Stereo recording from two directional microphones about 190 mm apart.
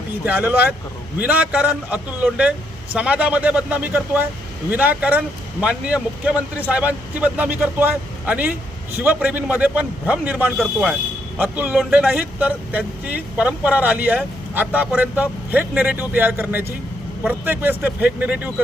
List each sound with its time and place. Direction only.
0.3 s speech: 10° right (ahead or behind)